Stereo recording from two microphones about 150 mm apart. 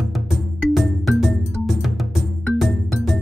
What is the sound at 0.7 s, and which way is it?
Music, centre (ahead or behind).